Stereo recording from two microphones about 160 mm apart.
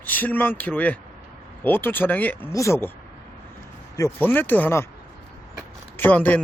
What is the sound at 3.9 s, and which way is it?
Speech, 15° left (ahead or behind).